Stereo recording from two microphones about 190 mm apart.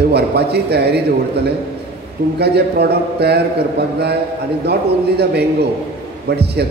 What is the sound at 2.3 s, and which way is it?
A man's voice, 60° right (ahead or behind).